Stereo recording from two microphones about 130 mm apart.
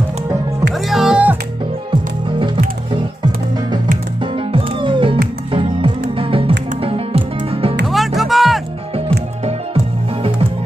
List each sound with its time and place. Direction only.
0.8 s music: 5° right (ahead or behind)
1.9 s music: 40° right (ahead or behind)
4.2 s music: 40° right (ahead or behind)
7.9 s music: centre (ahead or behind)